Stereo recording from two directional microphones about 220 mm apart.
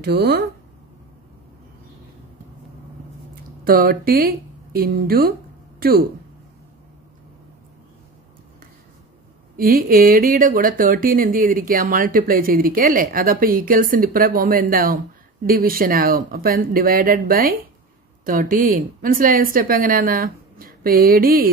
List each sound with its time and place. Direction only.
0.0 s speech: 45° right (ahead or behind)
3.6 s speech: 40° right (ahead or behind)
9.6 s speech: 40° right (ahead or behind)